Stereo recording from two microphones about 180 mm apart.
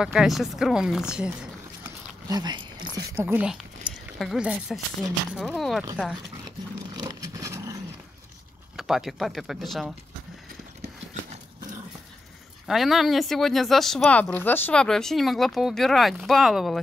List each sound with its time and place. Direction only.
0.0 s speech: centre (ahead or behind)
2.2 s speech: 20° right (ahead or behind)
3.1 s speech: 10° right (ahead or behind)
7.0 s vehicle: 20° right (ahead or behind)
8.7 s speech: centre (ahead or behind)
12.6 s speech: centre (ahead or behind)